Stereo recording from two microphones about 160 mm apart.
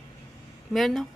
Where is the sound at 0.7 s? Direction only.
Centre (ahead or behind).